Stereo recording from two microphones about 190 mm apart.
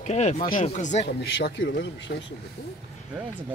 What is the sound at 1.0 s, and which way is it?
Speech, 60° left (ahead or behind).